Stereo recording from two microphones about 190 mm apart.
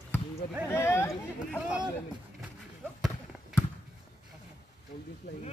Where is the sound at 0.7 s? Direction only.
15° left (ahead or behind).